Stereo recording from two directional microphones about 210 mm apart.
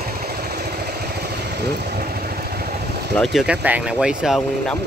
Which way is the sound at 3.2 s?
Centre (ahead or behind).